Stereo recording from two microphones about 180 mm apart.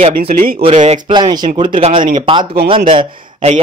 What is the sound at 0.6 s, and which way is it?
Speech, 35° right (ahead or behind).